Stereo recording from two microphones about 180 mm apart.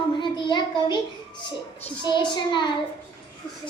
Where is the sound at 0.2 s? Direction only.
25° left (ahead or behind).